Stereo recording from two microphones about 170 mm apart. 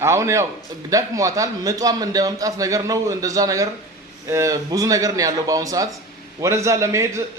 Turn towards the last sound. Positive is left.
turn(degrees=-15)  # may be behind; listen again after turning